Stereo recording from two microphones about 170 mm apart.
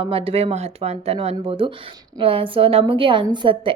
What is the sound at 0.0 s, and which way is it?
A woman's voice, 35° right (ahead or behind).